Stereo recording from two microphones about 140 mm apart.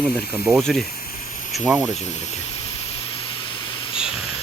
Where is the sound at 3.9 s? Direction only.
5° right (ahead or behind).